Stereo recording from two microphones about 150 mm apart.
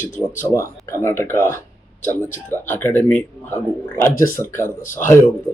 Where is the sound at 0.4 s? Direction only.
20° left (ahead or behind).